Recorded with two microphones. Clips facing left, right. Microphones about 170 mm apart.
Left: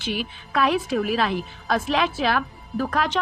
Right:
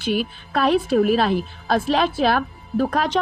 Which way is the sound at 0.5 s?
35° right (ahead or behind).